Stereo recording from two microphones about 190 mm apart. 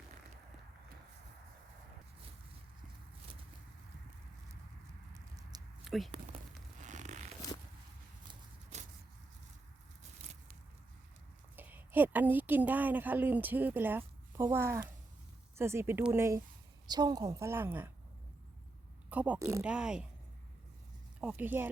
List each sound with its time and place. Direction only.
5.1 s patter: 20° right (ahead or behind)
5.8 s a sound: centre (ahead or behind)
6.8 s zipper: 40° right (ahead or behind)
11.5 s a woman's voice: 10° right (ahead or behind)
19.1 s a woman's voice: 5° right (ahead or behind)
21.2 s a woman's voice: 5° right (ahead or behind)